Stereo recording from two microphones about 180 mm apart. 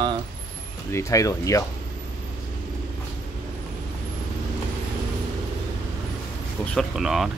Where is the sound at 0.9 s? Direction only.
20° left (ahead or behind).